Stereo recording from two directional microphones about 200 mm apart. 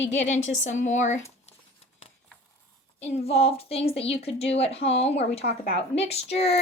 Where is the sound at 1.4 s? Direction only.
30° left (ahead or behind).